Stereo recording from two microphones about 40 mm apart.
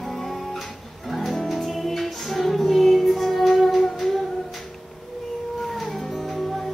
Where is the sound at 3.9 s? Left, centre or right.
Centre.